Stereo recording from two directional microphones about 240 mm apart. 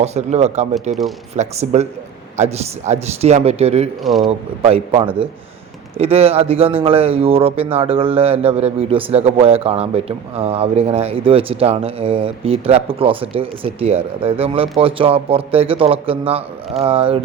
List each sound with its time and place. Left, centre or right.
0.0 s a man's voice: right
4.0 s speech: centre
4.3 s a man's voice: right